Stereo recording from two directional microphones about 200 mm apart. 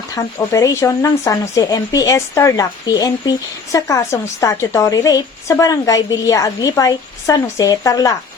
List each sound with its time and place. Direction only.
0.2 s speech: 15° left (ahead or behind)